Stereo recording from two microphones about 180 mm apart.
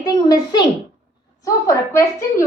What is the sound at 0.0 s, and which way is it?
Speech, 20° left (ahead or behind).